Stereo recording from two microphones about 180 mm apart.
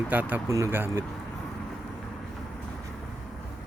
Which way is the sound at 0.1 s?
10° right (ahead or behind).